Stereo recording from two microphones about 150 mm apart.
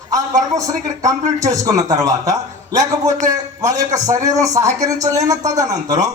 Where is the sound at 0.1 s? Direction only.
25° right (ahead or behind).